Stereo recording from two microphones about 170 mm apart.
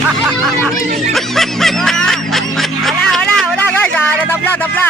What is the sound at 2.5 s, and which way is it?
Speech, centre (ahead or behind).